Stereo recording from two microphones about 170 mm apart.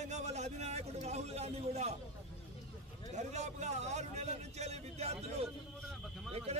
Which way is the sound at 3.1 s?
45° right (ahead or behind).